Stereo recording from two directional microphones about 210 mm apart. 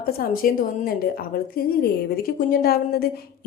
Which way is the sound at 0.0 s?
45° left (ahead or behind).